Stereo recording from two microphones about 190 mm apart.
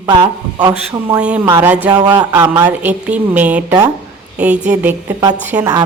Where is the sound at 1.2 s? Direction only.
5° right (ahead or behind).